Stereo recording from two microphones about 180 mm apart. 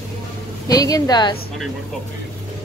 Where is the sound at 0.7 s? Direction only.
20° left (ahead or behind).